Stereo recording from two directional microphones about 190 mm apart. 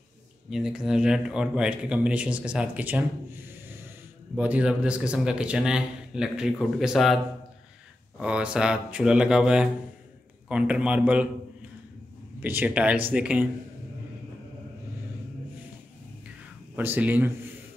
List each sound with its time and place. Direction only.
0.5 s speech: centre (ahead or behind)
8.2 s a man's voice: 5° right (ahead or behind)
12.4 s a man's voice: 10° right (ahead or behind)
16.7 s a man's voice: 10° right (ahead or behind)